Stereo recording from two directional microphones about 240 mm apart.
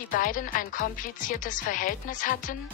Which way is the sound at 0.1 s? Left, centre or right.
Left.